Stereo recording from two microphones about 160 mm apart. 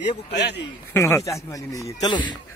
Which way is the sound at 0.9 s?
15° left (ahead or behind).